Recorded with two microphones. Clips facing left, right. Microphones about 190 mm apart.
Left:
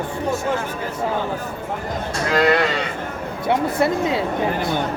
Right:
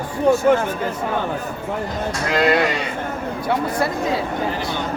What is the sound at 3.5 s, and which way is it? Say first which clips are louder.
Speech: left 3 dB; 25° left (ahead or behind).